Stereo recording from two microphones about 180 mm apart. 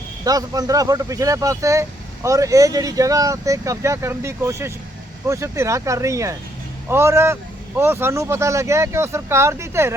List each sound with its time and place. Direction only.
0.3 s speech: 20° right (ahead or behind)